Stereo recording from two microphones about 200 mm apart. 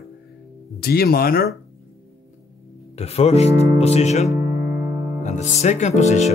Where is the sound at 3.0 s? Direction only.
30° left (ahead or behind).